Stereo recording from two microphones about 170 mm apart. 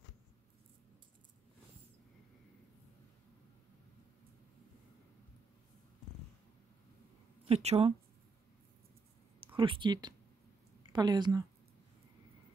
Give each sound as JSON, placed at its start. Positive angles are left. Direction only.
{"t": 7.4, "sound": "speech", "side_deg": -35}
{"t": 9.6, "sound": "speech", "side_deg": -30}